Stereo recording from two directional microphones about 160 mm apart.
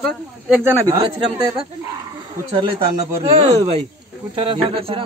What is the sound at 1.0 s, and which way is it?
Speech, 30° right (ahead or behind).